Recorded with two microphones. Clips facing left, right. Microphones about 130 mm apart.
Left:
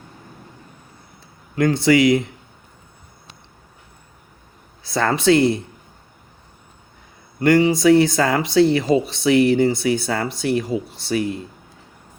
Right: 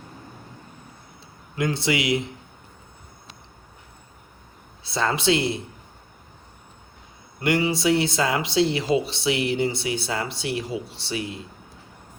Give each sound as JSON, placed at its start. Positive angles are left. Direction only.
{"t": 1.5, "sound": "speech", "side_deg": 45}
{"t": 4.9, "sound": "speech", "side_deg": 50}
{"t": 7.6, "sound": "speech", "side_deg": 45}